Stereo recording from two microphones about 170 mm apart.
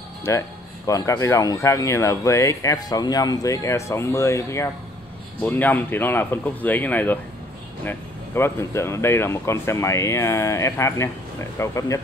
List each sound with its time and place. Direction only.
0.3 s speech: 15° left (ahead or behind)